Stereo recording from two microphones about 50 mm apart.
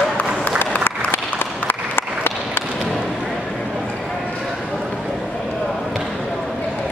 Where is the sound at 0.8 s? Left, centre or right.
Left.